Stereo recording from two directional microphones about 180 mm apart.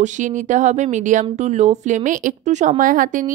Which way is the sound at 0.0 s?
45° right (ahead or behind).